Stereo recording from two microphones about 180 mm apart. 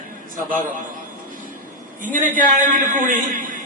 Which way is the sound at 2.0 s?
45° right (ahead or behind).